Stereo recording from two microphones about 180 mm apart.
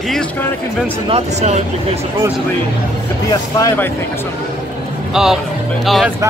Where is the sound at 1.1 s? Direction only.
40° right (ahead or behind).